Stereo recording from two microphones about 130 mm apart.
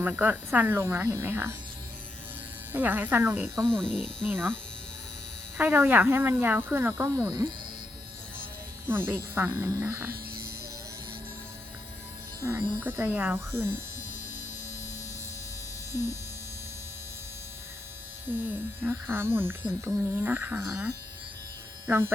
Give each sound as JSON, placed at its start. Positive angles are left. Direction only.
{"t": 0.0, "sound": "speech", "side_deg": -15}
{"t": 2.7, "sound": "speech", "side_deg": -15}
{"t": 3.5, "sound": "speech", "side_deg": 5}
{"t": 5.5, "sound": "speech", "side_deg": -15}
{"t": 8.9, "sound": "speech", "side_deg": -20}
{"t": 12.4, "sound": "speech", "side_deg": -20}
{"t": 18.3, "sound": "speech", "side_deg": -15}
{"t": 21.8, "sound": "speech", "side_deg": -20}